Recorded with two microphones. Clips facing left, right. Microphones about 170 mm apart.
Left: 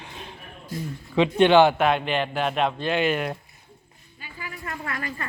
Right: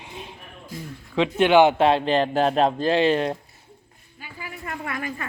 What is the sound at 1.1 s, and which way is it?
Speech, centre (ahead or behind).